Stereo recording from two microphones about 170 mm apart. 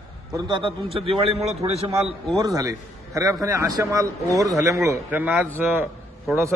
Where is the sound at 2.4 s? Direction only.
20° right (ahead or behind).